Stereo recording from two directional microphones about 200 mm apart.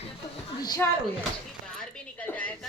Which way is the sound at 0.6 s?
20° left (ahead or behind).